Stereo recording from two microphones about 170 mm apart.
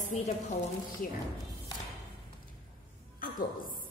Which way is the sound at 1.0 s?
55° left (ahead or behind).